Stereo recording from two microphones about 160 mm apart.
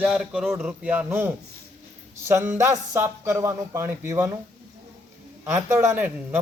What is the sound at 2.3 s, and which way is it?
Speech, 15° right (ahead or behind).